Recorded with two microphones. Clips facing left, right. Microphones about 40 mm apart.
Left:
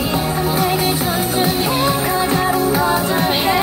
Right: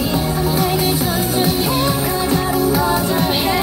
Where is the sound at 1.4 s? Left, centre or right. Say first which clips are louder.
Left 1 dB; left.